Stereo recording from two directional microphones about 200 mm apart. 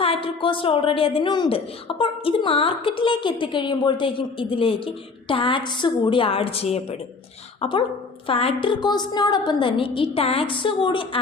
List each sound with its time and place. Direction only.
0.0 s a woman's voice: 30° left (ahead or behind)